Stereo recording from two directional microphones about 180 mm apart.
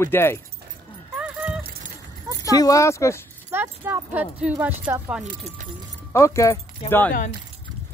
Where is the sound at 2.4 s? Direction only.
20° left (ahead or behind).